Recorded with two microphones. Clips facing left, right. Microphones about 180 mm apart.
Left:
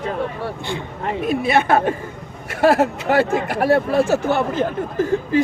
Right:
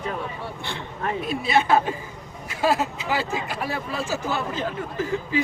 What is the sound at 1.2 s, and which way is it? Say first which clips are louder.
Speech: left 4 dB; 55° left (ahead or behind).